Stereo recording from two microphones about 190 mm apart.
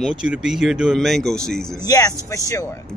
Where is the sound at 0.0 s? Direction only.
5° right (ahead or behind).